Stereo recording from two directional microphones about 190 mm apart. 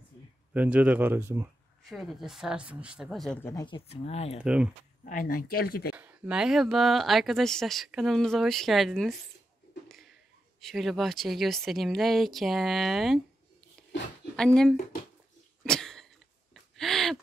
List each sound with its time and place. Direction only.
0.5 s speech: 10° right (ahead or behind)
1.9 s speech: centre (ahead or behind)
3.4 s speech: 20° left (ahead or behind)
5.0 s speech: 45° left (ahead or behind)
5.9 s speech: 5° right (ahead or behind)
9.8 s a sound: centre (ahead or behind)
10.6 s speech: centre (ahead or behind)
14.3 s speech: 5° left (ahead or behind)
15.6 s cough: 5° left (ahead or behind)
16.7 s a sound: centre (ahead or behind)